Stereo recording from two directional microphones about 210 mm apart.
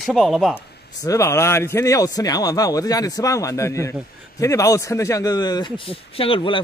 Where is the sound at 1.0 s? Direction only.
15° left (ahead or behind).